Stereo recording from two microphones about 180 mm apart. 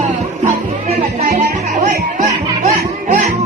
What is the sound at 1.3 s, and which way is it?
Music, 55° right (ahead or behind).